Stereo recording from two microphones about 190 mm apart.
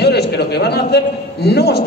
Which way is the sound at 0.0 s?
60° left (ahead or behind).